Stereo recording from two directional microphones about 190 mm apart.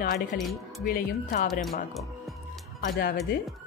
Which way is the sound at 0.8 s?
45° left (ahead or behind).